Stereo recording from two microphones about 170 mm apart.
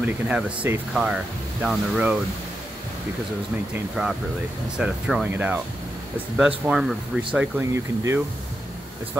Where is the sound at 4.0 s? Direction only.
Centre (ahead or behind).